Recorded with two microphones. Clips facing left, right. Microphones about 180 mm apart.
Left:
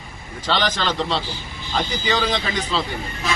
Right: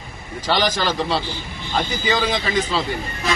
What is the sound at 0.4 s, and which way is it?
A man's voice, 10° right (ahead or behind).